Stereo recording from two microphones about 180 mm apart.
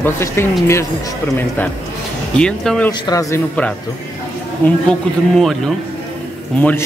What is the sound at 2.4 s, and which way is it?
Speech, 5° left (ahead or behind).